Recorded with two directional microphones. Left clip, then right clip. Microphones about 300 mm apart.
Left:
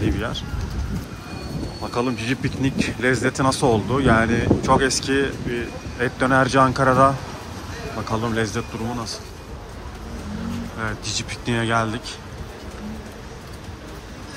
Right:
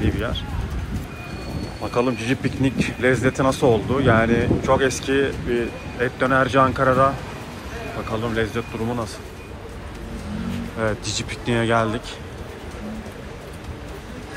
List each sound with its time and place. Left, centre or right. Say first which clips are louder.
0.0 s speech: even; centre
2.0 s speech: right 2 dB; centre
8.1 s speech: even; centre
10.8 s speech: right 3 dB; centre